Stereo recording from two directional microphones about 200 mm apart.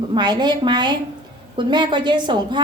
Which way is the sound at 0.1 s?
20° right (ahead or behind).